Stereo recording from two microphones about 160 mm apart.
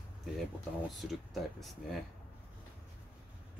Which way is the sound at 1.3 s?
Centre (ahead or behind).